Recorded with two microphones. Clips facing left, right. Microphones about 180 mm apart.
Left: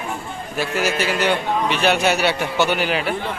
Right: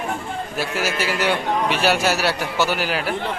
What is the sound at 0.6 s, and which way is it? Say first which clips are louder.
A man's voice: left 3 dB; 5° right (ahead or behind).